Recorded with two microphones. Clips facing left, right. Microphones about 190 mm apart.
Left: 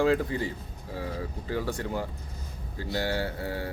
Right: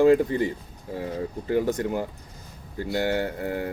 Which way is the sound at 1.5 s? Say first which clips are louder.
Right 7 dB; 20° right (ahead or behind).